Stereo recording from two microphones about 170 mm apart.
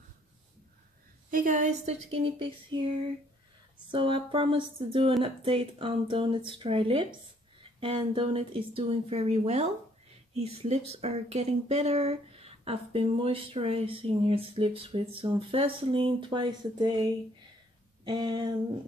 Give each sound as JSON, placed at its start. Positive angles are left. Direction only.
{"t": 1.3, "sound": "a woman's voice", "side_deg": -50}
{"t": 3.9, "sound": "speech", "side_deg": -30}
{"t": 18.0, "sound": "a sound", "side_deg": -25}